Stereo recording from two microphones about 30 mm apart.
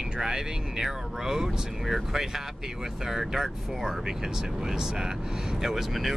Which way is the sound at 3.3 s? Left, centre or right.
Centre.